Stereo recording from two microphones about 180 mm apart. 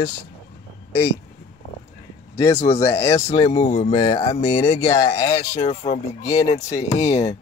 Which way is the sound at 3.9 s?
20° left (ahead or behind).